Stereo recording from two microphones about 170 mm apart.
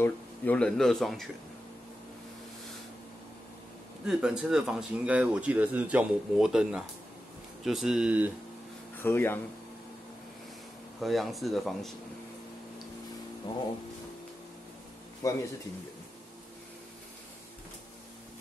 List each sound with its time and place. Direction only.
0.0 s speech: 5° left (ahead or behind)
4.0 s speech: 5° right (ahead or behind)
9.0 s speech: 15° left (ahead or behind)
11.0 s speech: centre (ahead or behind)
15.2 s a man's voice: 20° left (ahead or behind)